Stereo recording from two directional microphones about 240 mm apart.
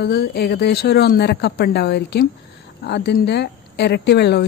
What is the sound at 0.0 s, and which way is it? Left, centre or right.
Speech, left.